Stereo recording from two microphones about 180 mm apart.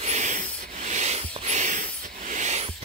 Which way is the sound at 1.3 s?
40° right (ahead or behind).